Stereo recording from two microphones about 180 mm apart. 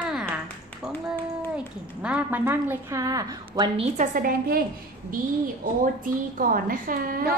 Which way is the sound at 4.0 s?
50° right (ahead or behind).